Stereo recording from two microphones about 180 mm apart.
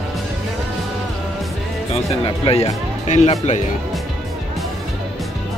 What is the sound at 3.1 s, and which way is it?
Speech, 40° left (ahead or behind).